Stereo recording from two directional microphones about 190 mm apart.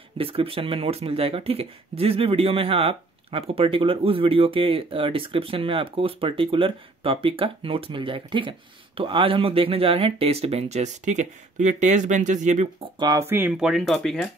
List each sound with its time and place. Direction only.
0.2 s speech: 30° right (ahead or behind)
13.0 s speech: 15° right (ahead or behind); by 14.3 s 5° left (ahead or behind)